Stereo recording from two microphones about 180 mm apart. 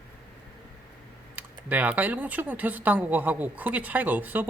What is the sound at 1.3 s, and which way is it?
Speech, 10° right (ahead or behind).